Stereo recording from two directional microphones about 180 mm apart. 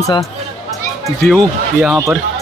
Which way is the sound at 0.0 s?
20° left (ahead or behind).